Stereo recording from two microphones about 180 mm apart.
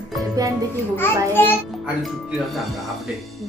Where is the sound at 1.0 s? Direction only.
10° left (ahead or behind).